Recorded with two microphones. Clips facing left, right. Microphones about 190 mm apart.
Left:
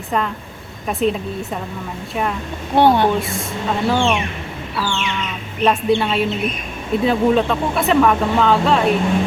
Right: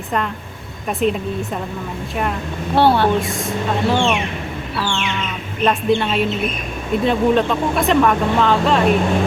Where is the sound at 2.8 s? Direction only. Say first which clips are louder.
Left 1 dB; 20° left (ahead or behind).